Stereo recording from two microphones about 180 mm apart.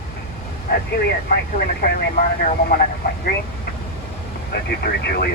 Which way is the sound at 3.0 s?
55° left (ahead or behind).